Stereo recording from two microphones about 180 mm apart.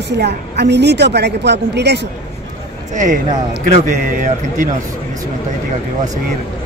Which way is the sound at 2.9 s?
45° right (ahead or behind).